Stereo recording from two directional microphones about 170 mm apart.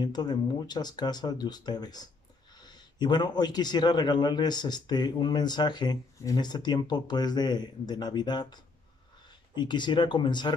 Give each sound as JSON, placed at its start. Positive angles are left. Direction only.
{"t": 0.0, "sound": "a man's voice", "side_deg": 25}
{"t": 9.6, "sound": "a man's voice", "side_deg": 25}